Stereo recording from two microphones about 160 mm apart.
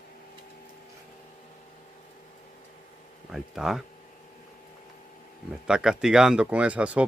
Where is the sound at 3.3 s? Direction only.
Centre (ahead or behind).